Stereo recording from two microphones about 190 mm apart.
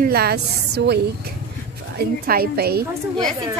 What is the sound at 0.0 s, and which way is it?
A woman's voice, 55° right (ahead or behind).